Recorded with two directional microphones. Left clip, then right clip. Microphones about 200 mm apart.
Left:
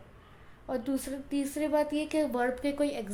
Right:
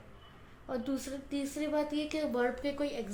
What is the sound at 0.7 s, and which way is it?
A woman's voice, 45° left (ahead or behind).